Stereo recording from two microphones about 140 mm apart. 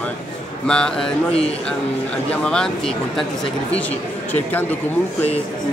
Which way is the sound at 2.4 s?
5° left (ahead or behind).